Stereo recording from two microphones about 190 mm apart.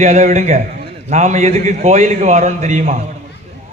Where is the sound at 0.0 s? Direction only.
35° right (ahead or behind).